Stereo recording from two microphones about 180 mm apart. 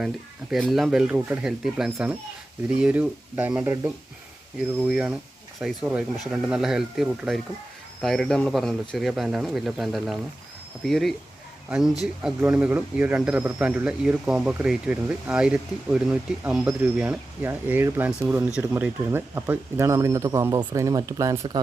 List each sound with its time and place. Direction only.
0.5 s speech: centre (ahead or behind)
12.2 s speech: 10° right (ahead or behind)